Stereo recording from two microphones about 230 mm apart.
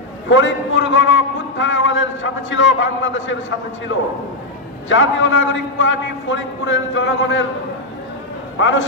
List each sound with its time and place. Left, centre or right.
0.3 s a man's voice: left
4.8 s a man's voice: left
8.5 s a man's voice: left